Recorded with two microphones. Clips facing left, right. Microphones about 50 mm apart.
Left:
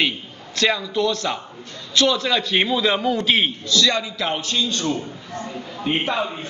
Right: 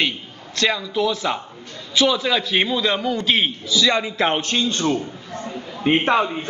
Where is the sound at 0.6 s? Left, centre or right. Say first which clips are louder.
Even; centre.